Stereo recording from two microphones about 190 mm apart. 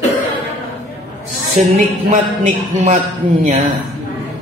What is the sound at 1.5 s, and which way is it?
A woman's voice, 45° right (ahead or behind).